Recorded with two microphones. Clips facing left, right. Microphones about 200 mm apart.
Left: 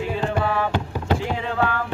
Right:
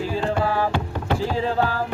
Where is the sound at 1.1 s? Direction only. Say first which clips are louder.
Right 5 dB; 30° right (ahead or behind).